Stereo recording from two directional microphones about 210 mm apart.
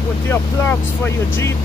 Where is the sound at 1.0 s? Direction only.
10° left (ahead or behind).